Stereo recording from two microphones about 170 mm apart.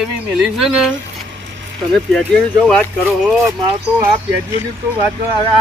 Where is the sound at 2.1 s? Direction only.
5° left (ahead or behind).